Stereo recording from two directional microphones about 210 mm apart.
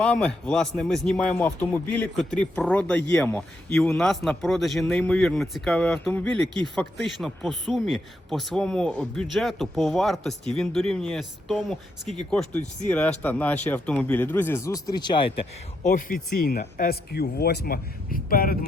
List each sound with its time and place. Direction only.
0.0 s speech: 5° left (ahead or behind); by 15.3 s 20° left (ahead or behind)
15.8 s speech: 40° left (ahead or behind)